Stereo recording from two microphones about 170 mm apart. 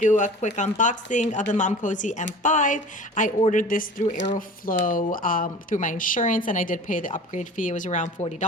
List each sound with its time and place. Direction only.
0.0 s a woman's voice: 45° left (ahead or behind)